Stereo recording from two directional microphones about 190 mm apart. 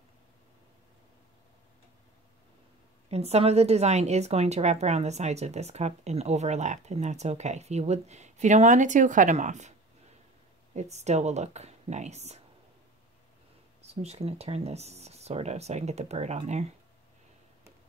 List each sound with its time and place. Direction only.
3.1 s a woman's voice: 35° right (ahead or behind)
13.8 s a woman's voice: 35° right (ahead or behind)